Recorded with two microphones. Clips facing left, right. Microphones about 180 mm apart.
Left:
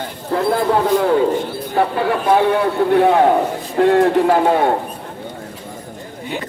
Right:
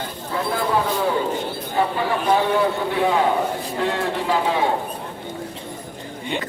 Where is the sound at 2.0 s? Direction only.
60° left (ahead or behind).